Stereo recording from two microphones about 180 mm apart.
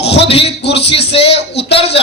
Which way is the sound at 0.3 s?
30° left (ahead or behind).